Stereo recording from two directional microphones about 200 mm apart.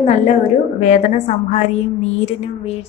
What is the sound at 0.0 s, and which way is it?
A woman's voice, 35° left (ahead or behind).